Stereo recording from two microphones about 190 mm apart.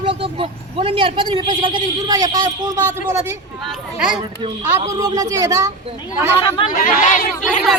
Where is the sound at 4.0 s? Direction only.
5° right (ahead or behind).